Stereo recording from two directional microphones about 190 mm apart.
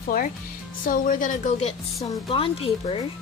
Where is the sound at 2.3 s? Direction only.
30° left (ahead or behind).